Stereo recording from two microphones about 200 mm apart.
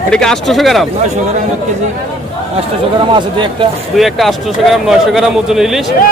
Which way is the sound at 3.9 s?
Centre (ahead or behind).